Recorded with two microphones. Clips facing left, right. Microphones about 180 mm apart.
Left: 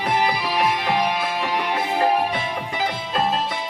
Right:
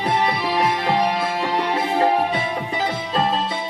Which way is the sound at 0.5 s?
25° right (ahead or behind).